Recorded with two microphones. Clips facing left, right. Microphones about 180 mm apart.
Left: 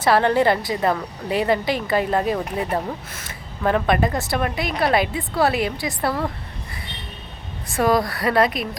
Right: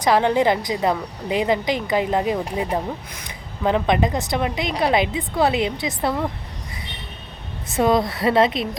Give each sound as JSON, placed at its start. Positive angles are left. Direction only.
{"t": 0.0, "sound": "a woman's voice", "side_deg": -15}
{"t": 7.7, "sound": "a woman's voice", "side_deg": -20}